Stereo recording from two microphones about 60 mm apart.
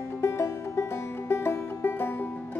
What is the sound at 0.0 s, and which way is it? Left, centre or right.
Music, left.